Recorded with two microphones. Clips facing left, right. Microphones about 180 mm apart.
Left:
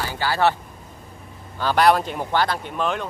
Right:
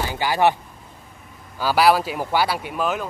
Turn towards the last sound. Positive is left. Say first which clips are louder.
# right 1 dB
turn(degrees=-5)  # may be behind; listen again after turning